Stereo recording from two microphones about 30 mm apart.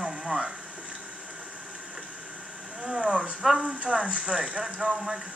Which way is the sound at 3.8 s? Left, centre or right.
Right.